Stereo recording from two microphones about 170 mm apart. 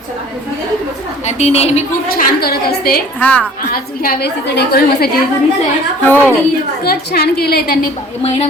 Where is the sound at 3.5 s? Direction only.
60° left (ahead or behind).